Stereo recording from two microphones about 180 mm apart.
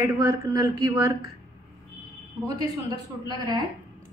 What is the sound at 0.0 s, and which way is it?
Speech, 20° right (ahead or behind).